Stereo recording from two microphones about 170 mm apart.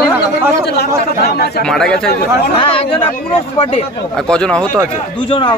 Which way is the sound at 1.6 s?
5° left (ahead or behind).